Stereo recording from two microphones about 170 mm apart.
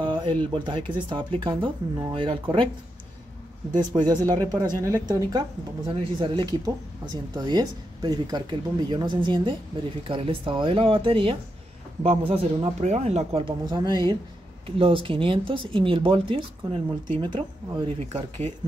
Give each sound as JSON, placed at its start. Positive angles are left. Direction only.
{"t": 0.0, "sound": "speech", "side_deg": -30}
{"t": 3.7, "sound": "speech", "side_deg": -25}